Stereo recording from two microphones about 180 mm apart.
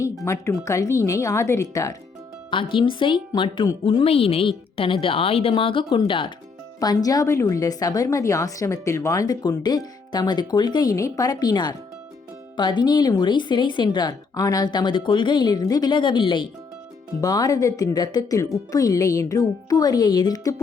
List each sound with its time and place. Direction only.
0.3 s speech: 15° left (ahead or behind)
2.5 s speech: 30° left (ahead or behind)